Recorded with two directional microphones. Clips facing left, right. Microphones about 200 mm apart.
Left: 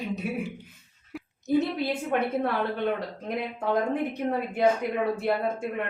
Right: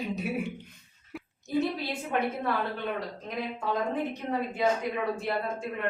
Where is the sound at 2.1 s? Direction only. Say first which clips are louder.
Left 1 dB; 55° left (ahead or behind).